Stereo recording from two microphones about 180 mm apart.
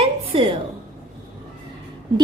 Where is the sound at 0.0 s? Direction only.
30° right (ahead or behind).